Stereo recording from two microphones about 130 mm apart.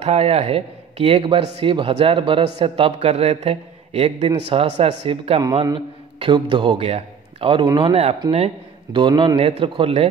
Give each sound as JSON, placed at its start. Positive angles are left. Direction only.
{"t": 0.0, "sound": "speech", "side_deg": -55}
{"t": 5.4, "sound": "a man's voice", "side_deg": -35}
{"t": 9.4, "sound": "speech", "side_deg": -50}